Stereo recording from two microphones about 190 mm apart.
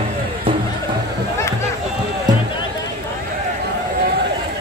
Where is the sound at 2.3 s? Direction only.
20° right (ahead or behind).